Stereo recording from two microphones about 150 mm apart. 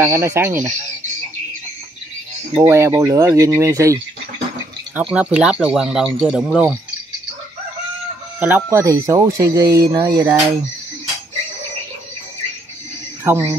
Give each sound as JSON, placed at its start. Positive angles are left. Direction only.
{"t": 0.0, "sound": "speech", "side_deg": -15}
{"t": 2.5, "sound": "speech", "side_deg": -20}
{"t": 5.1, "sound": "speech", "side_deg": -5}
{"t": 8.4, "sound": "speech", "side_deg": -10}
{"t": 13.2, "sound": "speech", "side_deg": -20}